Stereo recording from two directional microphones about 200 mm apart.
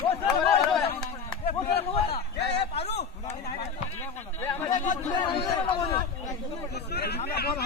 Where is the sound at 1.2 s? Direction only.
25° left (ahead or behind).